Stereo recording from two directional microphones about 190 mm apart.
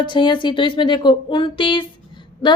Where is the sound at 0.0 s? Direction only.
25° left (ahead or behind).